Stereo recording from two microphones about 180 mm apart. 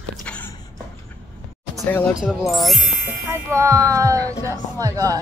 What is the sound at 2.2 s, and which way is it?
Speech, centre (ahead or behind).